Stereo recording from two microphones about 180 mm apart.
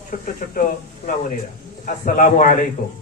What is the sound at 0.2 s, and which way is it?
Speech, 50° left (ahead or behind).